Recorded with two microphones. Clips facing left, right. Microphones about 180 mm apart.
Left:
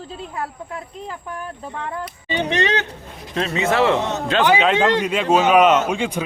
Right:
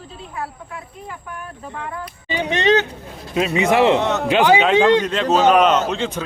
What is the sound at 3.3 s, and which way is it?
Speech, 10° right (ahead or behind).